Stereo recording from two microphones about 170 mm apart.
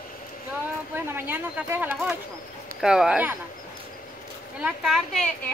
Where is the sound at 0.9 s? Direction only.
10° right (ahead or behind).